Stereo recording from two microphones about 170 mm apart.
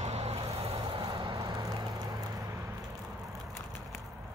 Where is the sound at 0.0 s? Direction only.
35° right (ahead or behind).